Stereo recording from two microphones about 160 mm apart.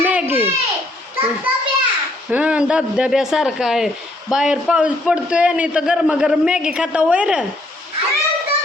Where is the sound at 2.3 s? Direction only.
10° right (ahead or behind).